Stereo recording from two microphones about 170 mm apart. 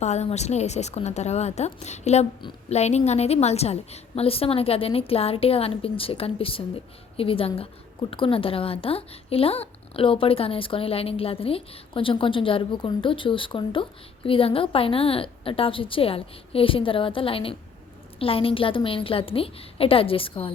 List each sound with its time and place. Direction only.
0.0 s speech: 40° left (ahead or behind)